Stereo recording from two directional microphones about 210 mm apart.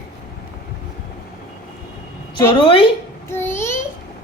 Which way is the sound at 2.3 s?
20° left (ahead or behind).